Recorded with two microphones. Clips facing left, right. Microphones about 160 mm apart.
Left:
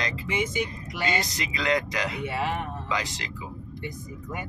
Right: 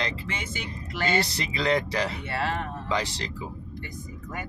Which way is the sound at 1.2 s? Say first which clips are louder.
Right 2 dB; 30° right (ahead or behind).